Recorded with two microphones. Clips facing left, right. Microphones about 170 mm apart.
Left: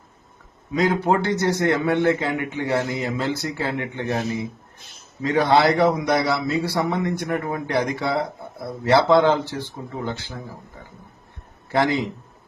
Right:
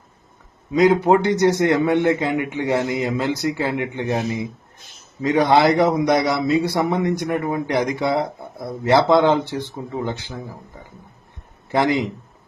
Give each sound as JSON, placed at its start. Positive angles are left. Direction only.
{"t": 0.7, "sound": "a man's voice", "side_deg": -20}
{"t": 11.7, "sound": "a man's voice", "side_deg": -15}